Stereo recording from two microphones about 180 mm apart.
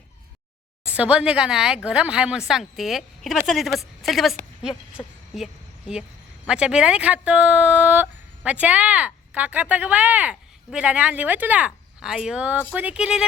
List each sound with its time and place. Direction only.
0.9 s a woman's voice: 5° right (ahead or behind)
5.0 s speech: 25° left (ahead or behind)
5.3 s a sound: centre (ahead or behind)
6.5 s speech: 5° right (ahead or behind)